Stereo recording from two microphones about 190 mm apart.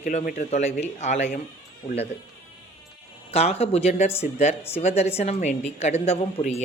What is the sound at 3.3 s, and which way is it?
A woman's voice, 35° left (ahead or behind).